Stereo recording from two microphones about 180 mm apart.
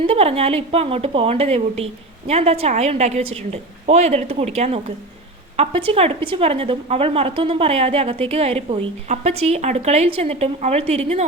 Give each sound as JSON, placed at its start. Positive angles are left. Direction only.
{"t": 0.0, "sound": "a woman's voice", "side_deg": -35}